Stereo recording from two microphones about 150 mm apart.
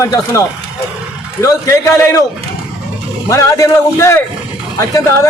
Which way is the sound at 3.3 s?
20° left (ahead or behind).